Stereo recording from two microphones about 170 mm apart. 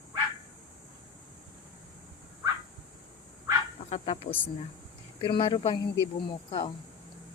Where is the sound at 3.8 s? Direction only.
35° left (ahead or behind).